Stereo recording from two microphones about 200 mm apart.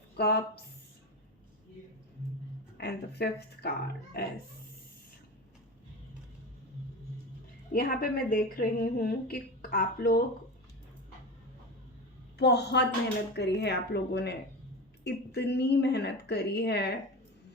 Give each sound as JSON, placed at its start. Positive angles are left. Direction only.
{"t": 0.2, "sound": "a woman's voice", "side_deg": 50}
{"t": 2.7, "sound": "a woman's voice", "side_deg": 55}
{"t": 7.7, "sound": "a woman's voice", "side_deg": 45}
{"t": 12.4, "sound": "speech", "side_deg": 55}